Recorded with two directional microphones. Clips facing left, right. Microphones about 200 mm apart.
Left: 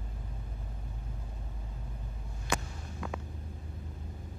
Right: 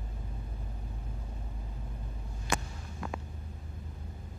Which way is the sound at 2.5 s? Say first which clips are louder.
Even; 90° left.